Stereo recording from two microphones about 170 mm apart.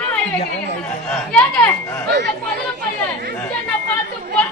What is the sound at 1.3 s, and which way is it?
Speech, 10° left (ahead or behind).